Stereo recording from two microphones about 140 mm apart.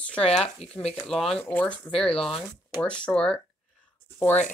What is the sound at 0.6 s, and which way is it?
Speech, 50° left (ahead or behind).